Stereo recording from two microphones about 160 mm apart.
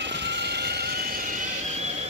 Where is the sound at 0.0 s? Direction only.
90° right.